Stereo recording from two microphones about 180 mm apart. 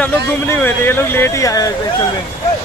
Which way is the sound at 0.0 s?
10° left (ahead or behind).